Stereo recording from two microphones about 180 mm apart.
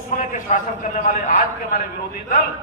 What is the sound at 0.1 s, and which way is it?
A man's voice, 45° left (ahead or behind).